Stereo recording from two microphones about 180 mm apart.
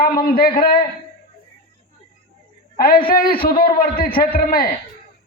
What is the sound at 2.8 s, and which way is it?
A man's voice, 55° left (ahead or behind).